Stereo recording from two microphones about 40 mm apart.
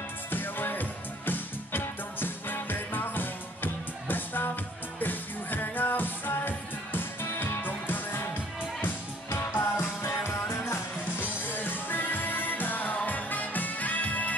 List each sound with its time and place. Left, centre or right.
0.3 s music: left
11.1 s music: left